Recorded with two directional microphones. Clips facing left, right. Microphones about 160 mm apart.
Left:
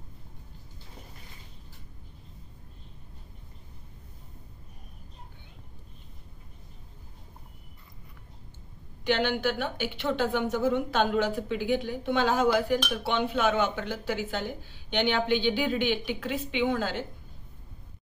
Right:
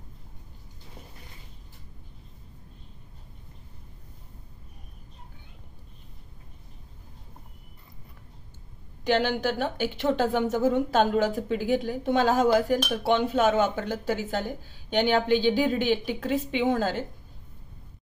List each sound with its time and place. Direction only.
9.0 s speech: 40° right (ahead or behind)